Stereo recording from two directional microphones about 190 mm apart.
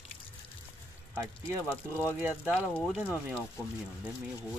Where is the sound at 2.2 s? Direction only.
10° right (ahead or behind).